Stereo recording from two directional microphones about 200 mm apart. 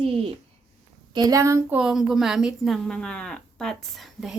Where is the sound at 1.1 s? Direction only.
20° right (ahead or behind).